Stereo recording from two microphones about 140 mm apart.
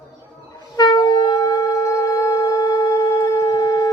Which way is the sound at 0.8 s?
30° left (ahead or behind).